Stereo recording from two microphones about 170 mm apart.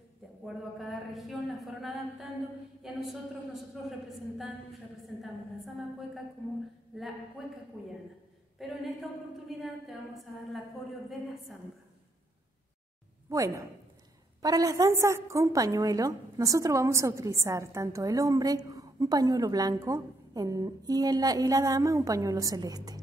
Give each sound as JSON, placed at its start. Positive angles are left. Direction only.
{"t": 0.5, "sound": "a woman's voice", "side_deg": 0}
{"t": 5.0, "sound": "a woman's voice", "side_deg": 0}
{"t": 7.4, "sound": "a woman's voice", "side_deg": 0}
{"t": 8.5, "sound": "a woman's voice", "side_deg": 0}
{"t": 13.3, "sound": "a woman's voice", "side_deg": -20}